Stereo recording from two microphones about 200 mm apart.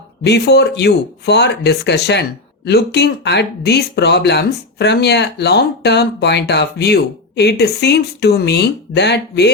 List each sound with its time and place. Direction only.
0.3 s speech: 55° left (ahead or behind)